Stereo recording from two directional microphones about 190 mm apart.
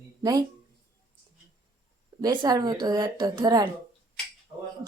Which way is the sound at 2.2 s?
20° right (ahead or behind).